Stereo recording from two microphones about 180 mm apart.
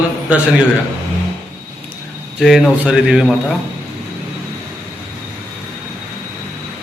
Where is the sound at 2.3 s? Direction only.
Centre (ahead or behind).